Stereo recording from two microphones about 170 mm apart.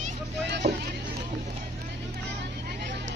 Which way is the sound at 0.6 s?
60° right (ahead or behind).